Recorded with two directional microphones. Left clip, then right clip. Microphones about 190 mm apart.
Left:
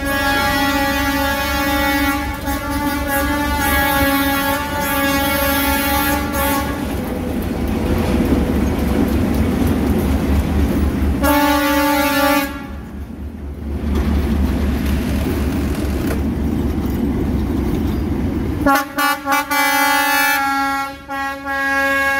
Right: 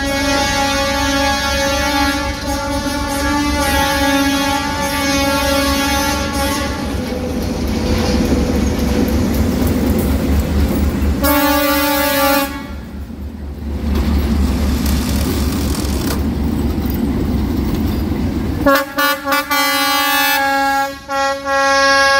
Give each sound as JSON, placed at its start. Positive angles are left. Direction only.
{"t": 11.2, "sound": "vehicle", "side_deg": 40}
{"t": 18.6, "sound": "air horn", "side_deg": 5}